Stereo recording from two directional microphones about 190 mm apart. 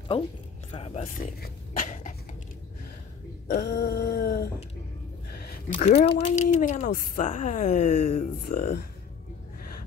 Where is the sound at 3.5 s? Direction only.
60° left (ahead or behind).